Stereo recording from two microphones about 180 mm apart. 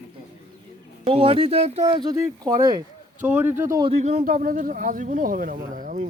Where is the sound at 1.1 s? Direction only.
30° right (ahead or behind).